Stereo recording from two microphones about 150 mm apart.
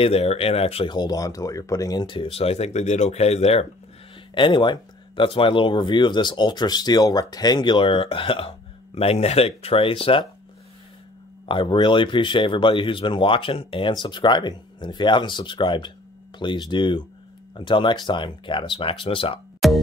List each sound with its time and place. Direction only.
0.0 s speech: 40° left (ahead or behind)
0.9 s speech: 25° left (ahead or behind); by 3.6 s 45° left (ahead or behind)
4.4 s speech: 30° left (ahead or behind)
11.4 s speech: 35° left (ahead or behind)
19.6 s music: centre (ahead or behind)